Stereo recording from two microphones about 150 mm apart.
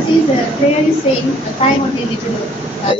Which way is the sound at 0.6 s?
45° left (ahead or behind).